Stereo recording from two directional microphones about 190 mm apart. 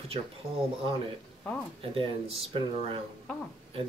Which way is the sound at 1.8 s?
30° right (ahead or behind).